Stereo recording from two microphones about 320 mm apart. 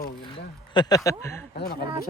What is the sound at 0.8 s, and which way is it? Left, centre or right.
Speech, centre.